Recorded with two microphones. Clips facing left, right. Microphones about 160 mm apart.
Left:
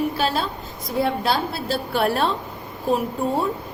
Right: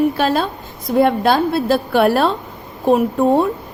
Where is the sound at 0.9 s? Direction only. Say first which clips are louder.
Right 8 dB; 55° right (ahead or behind).